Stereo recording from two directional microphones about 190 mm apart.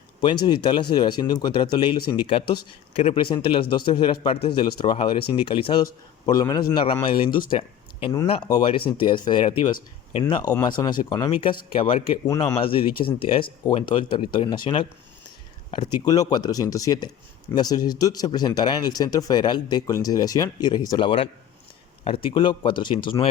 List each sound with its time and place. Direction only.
0.2 s speech: 25° left (ahead or behind)